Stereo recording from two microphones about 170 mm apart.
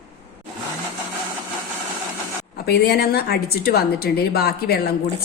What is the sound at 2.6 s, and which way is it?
A woman's voice, 70° left (ahead or behind).